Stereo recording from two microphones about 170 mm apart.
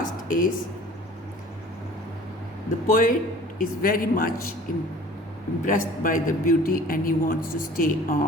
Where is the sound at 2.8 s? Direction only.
50° left (ahead or behind).